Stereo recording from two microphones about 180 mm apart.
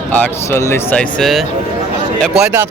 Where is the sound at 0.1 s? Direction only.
10° left (ahead or behind).